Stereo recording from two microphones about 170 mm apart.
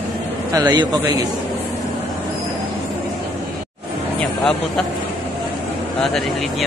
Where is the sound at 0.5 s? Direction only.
20° right (ahead or behind).